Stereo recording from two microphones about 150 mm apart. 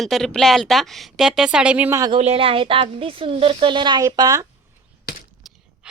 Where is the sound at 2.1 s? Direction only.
40° right (ahead or behind); by 4.5 s 25° right (ahead or behind).